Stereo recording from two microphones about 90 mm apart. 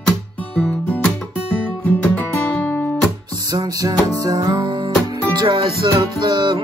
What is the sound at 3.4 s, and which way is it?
Music, 45° right (ahead or behind).